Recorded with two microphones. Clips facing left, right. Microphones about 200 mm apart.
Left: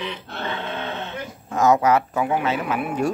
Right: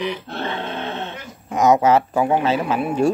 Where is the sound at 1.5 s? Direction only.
20° right (ahead or behind).